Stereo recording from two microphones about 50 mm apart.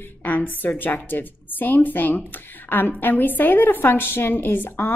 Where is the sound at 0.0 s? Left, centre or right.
Left.